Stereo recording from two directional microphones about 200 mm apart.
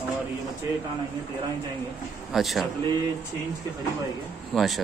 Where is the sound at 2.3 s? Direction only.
Centre (ahead or behind).